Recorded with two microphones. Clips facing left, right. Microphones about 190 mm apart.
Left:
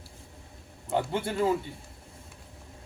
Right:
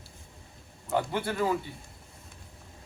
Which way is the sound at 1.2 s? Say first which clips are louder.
Left 2 dB; 25° left (ahead or behind).